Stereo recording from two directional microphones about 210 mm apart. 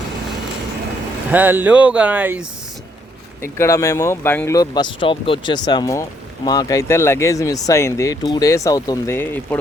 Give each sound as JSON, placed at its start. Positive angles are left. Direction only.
{"t": 1.3, "sound": "speech", "side_deg": -10}
{"t": 3.4, "sound": "speech", "side_deg": 15}